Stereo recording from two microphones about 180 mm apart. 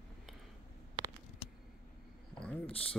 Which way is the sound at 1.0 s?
25° right (ahead or behind).